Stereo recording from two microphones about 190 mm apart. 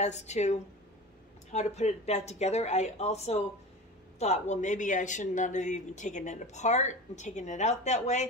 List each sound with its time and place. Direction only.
0.0 s speech: 35° left (ahead or behind)